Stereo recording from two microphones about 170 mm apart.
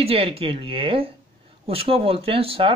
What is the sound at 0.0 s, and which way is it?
Speech, 35° right (ahead or behind).